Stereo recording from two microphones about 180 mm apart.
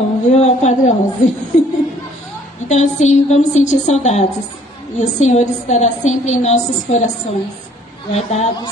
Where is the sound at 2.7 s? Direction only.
40° left (ahead or behind).